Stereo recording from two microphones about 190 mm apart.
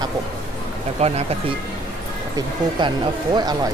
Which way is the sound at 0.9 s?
35° right (ahead or behind).